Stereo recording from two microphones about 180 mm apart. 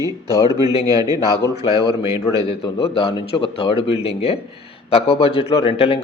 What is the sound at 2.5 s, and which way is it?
Speech, 30° left (ahead or behind).